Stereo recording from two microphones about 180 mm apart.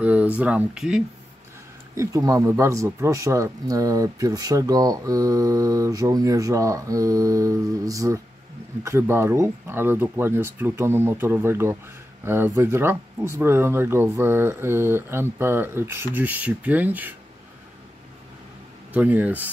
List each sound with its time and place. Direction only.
0.0 s a sound: 10° right (ahead or behind)
0.4 s speech: 10° right (ahead or behind)
2.0 s speech: 15° right (ahead or behind)
18.9 s speech: 10° right (ahead or behind)